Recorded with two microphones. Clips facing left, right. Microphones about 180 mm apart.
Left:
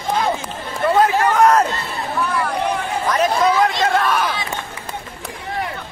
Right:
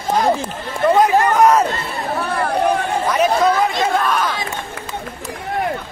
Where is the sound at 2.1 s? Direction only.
45° right (ahead or behind).